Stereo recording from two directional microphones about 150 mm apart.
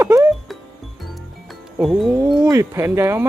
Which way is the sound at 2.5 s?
20° right (ahead or behind).